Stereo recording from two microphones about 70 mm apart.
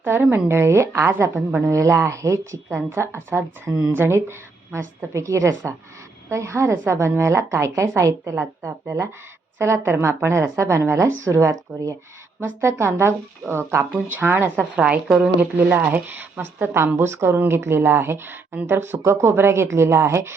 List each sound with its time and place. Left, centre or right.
0.0 s a woman's voice: right
14.8 s a woman's voice: centre
15.5 s a woman's voice: right